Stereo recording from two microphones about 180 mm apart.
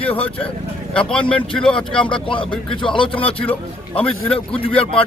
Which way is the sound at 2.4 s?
5° left (ahead or behind).